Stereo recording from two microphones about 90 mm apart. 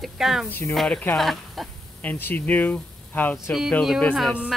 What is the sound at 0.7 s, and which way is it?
Speech, 10° left (ahead or behind).